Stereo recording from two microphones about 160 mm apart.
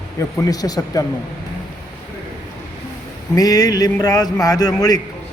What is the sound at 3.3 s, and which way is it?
A man's voice, 25° left (ahead or behind).